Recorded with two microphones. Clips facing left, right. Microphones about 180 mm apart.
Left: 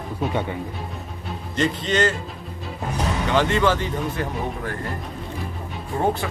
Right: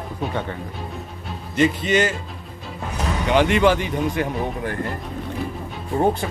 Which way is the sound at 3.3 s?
15° right (ahead or behind).